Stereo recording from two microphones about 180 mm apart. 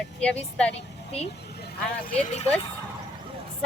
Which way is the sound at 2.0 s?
40° left (ahead or behind).